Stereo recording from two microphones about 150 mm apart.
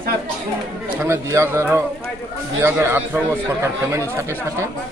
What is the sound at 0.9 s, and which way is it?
Speech, 15° right (ahead or behind).